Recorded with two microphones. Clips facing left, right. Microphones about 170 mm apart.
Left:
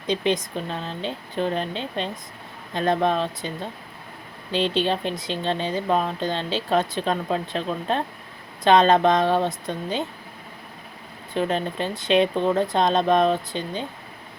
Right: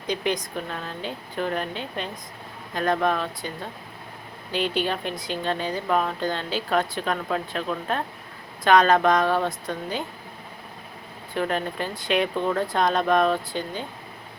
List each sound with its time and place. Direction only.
0.1 s speech: 25° left (ahead or behind)
4.5 s speech: 25° left (ahead or behind)
11.3 s speech: 20° left (ahead or behind)